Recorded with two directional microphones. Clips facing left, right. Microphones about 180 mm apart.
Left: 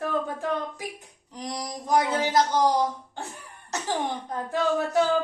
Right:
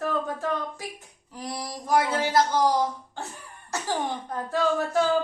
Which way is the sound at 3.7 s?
20° left (ahead or behind).